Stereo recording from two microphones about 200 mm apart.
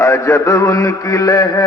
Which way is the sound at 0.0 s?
15° left (ahead or behind).